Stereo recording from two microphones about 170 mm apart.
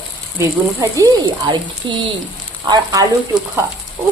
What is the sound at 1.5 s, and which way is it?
Speech, 30° right (ahead or behind).